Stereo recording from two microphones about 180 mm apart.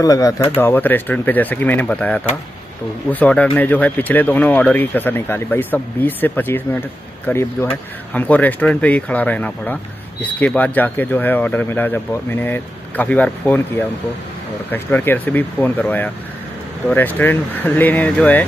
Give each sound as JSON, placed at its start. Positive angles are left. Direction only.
{"t": 0.0, "sound": "speech", "side_deg": 20}